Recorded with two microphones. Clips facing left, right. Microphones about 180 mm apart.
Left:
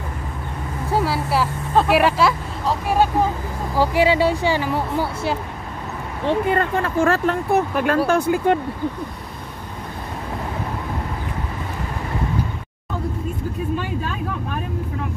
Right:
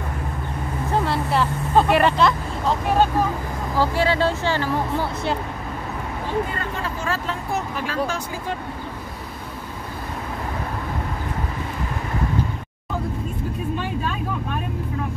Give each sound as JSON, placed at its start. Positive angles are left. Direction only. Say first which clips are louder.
{"t": 0.9, "sound": "vehicle", "louder": "left 1 dB", "side_deg": 5}
{"t": 3.7, "sound": "speech", "louder": "left 4 dB", "side_deg": 15}
{"t": 6.2, "sound": "speech", "louder": "left 8 dB", "side_deg": 55}